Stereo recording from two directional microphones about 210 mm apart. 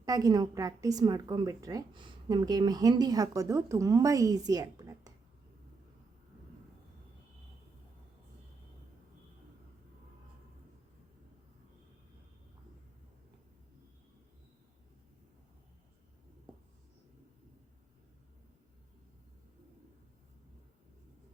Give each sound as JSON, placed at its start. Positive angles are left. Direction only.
{"t": 0.0, "sound": "a woman's voice", "side_deg": -15}